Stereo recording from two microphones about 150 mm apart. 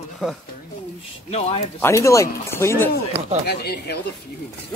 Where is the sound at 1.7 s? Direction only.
20° left (ahead or behind).